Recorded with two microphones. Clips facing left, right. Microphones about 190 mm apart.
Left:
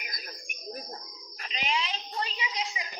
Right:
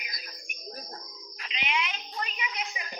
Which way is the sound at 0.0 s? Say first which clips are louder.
Left 3 dB; 50° left (ahead or behind).